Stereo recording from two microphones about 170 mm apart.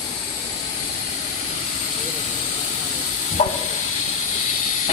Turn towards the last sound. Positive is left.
turn(degrees=45)  # may be behind; listen again after turning